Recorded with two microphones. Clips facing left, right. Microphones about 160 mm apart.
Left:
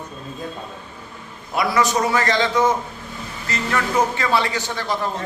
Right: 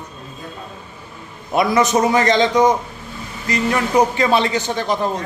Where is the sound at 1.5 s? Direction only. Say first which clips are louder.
Right 4 dB; 20° right (ahead or behind).